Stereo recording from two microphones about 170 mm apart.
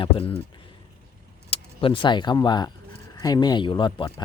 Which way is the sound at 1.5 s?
30° left (ahead or behind).